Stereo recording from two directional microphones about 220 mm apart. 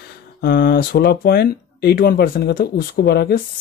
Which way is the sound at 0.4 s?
45° left (ahead or behind).